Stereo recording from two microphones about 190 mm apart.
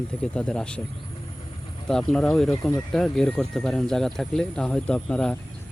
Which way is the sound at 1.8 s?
5° left (ahead or behind).